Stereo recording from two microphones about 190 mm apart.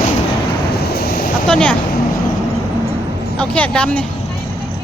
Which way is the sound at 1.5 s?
5° left (ahead or behind).